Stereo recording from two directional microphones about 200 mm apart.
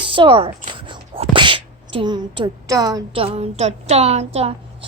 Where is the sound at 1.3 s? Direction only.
25° right (ahead or behind).